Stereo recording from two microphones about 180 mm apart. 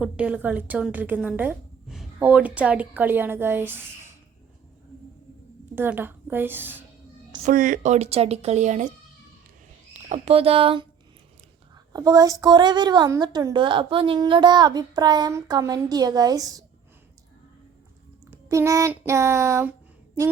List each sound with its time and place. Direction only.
0.0 s a woman's voice: 5° right (ahead or behind)
5.7 s a woman's voice: 10° right (ahead or behind)
7.4 s speech: 50° right (ahead or behind)
9.9 s speech: 35° right (ahead or behind)
11.9 s a woman's voice: 20° right (ahead or behind)
18.3 s speech: 15° right (ahead or behind)